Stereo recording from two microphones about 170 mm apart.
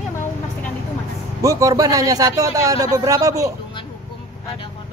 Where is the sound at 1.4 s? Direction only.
20° right (ahead or behind).